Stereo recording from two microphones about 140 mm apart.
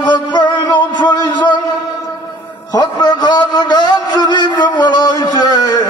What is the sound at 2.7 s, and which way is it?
A man's voice, 30° left (ahead or behind).